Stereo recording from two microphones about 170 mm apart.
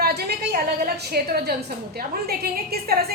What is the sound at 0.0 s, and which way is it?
A woman's voice, 70° right (ahead or behind).